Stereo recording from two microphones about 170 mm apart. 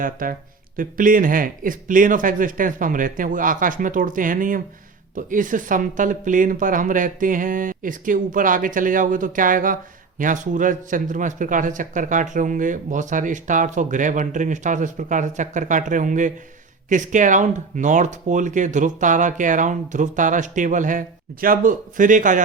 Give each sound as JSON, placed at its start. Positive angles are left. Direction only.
{"t": 0.0, "sound": "speech", "side_deg": -55}